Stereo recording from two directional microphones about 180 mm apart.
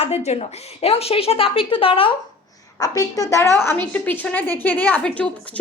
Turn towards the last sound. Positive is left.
turn(degrees=5)  # may be behind; listen again after turning